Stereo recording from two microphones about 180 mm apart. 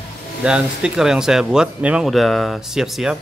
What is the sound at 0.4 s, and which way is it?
Speech, 5° right (ahead or behind).